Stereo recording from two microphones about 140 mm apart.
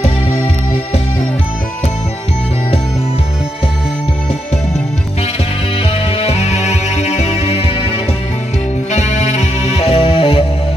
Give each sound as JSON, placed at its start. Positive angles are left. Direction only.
{"t": 6.1, "sound": "music", "side_deg": 50}
{"t": 8.9, "sound": "music", "side_deg": 55}